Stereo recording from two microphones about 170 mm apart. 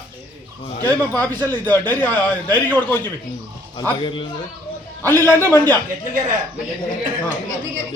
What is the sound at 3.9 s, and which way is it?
Speech, 30° left (ahead or behind).